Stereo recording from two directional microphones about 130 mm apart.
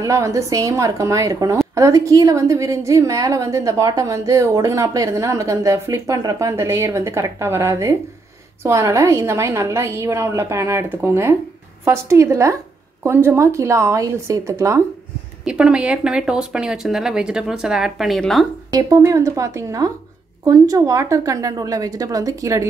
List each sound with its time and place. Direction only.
0.0 s a woman's voice: 25° right (ahead or behind)
15.4 s speech: 5° right (ahead or behind)
18.7 s a woman's voice: 25° right (ahead or behind)